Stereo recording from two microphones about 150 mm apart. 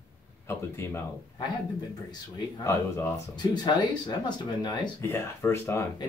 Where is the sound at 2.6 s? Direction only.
15° left (ahead or behind).